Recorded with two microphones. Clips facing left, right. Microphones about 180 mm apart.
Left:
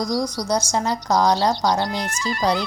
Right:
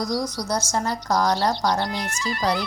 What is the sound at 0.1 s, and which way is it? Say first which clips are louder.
Speech: left 3 dB; 15° left (ahead or behind).